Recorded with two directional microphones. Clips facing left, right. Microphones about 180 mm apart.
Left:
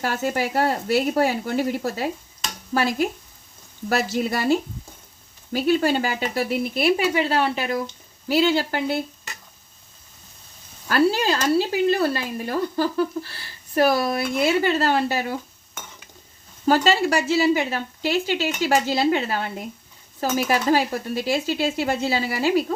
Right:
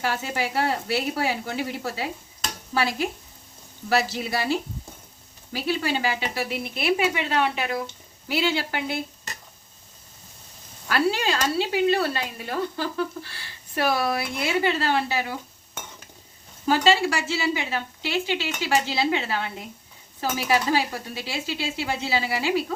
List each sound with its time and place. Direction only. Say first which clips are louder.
0.0 s speech: left 3 dB; 45° left (ahead or behind)
10.8 s speech: left 4 dB; 40° left (ahead or behind)
16.6 s speech: left 2 dB; 45° left (ahead or behind)